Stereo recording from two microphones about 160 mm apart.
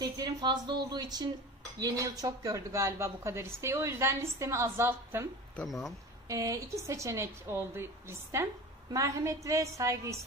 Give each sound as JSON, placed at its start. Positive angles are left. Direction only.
{"t": 0.0, "sound": "speech", "side_deg": -25}
{"t": 5.6, "sound": "speech", "side_deg": 0}
{"t": 6.2, "sound": "a woman's voice", "side_deg": -20}